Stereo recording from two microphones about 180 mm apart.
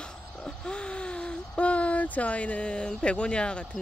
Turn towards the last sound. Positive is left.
turn(degrees=5)  # may be behind; listen again after turning